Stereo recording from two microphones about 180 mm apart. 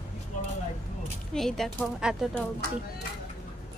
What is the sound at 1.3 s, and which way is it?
Speech, centre (ahead or behind).